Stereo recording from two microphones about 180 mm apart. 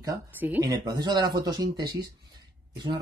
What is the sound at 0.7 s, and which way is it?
Speech, 25° right (ahead or behind).